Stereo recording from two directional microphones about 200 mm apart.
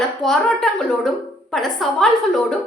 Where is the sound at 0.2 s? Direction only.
Centre (ahead or behind).